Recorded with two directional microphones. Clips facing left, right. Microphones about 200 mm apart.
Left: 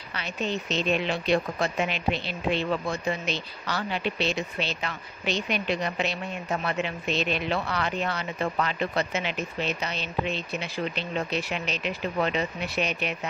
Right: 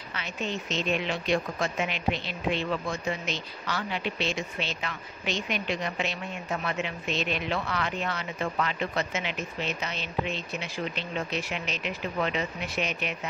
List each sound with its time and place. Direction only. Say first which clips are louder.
0.1 s speech: left 3 dB; 35° left (ahead or behind)